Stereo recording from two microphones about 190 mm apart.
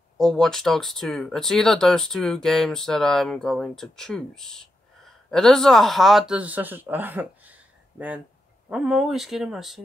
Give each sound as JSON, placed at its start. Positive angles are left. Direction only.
{"t": 0.2, "sound": "speech", "side_deg": 0}